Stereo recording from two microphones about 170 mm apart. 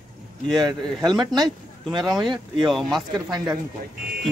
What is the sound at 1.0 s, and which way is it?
Speech, 25° right (ahead or behind).